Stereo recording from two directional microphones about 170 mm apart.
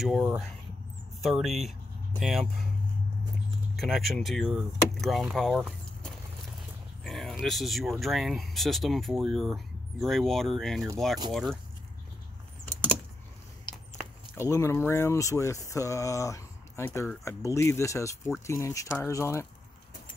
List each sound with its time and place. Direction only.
0.0 s speech: 5° right (ahead or behind)
3.7 s speech: centre (ahead or behind)
13.7 s biting: 25° left (ahead or behind)
14.3 s speech: 15° left (ahead or behind)